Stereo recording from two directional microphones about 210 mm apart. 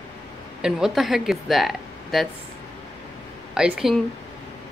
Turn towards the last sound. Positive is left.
turn(degrees=-5)  # may be behind; listen again after turning